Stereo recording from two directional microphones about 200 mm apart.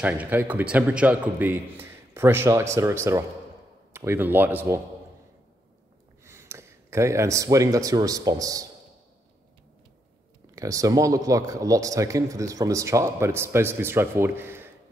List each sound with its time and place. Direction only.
0.0 s speech: 10° right (ahead or behind)
6.2 s speech: 15° right (ahead or behind)
10.5 s speech: 15° right (ahead or behind)